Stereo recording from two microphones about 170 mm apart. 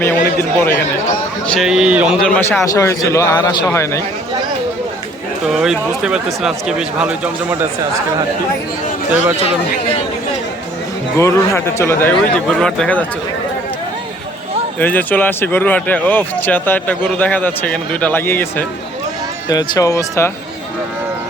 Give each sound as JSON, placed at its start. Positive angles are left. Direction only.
{"t": 0.6, "sound": "speech", "side_deg": 15}
{"t": 1.5, "sound": "speech", "side_deg": -5}
{"t": 2.2, "sound": "speech", "side_deg": 10}
{"t": 5.5, "sound": "speech", "side_deg": -5}
{"t": 11.2, "sound": "speech", "side_deg": 15}
{"t": 14.8, "sound": "speech", "side_deg": 10}
{"t": 19.5, "sound": "speech", "side_deg": 25}